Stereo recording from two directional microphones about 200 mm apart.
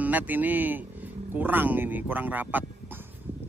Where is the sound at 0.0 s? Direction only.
10° right (ahead or behind).